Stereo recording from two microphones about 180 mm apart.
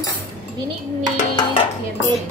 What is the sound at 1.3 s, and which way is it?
Speech, 25° left (ahead or behind).